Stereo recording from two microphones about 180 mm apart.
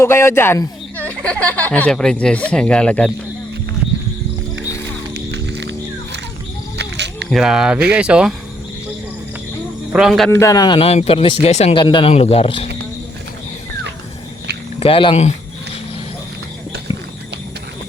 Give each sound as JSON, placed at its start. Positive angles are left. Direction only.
{"t": 0.0, "sound": "speech", "side_deg": 15}
{"t": 5.1, "sound": "music", "side_deg": -75}
{"t": 6.7, "sound": "a sound", "side_deg": -70}
{"t": 7.3, "sound": "speech", "side_deg": 0}
{"t": 9.9, "sound": "speech", "side_deg": 0}
{"t": 10.4, "sound": "speech", "side_deg": 20}
{"t": 14.8, "sound": "speech", "side_deg": 30}
{"t": 16.9, "sound": "a sound", "side_deg": -20}